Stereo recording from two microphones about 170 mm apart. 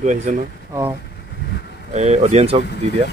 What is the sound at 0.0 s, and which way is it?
Speech, 45° right (ahead or behind).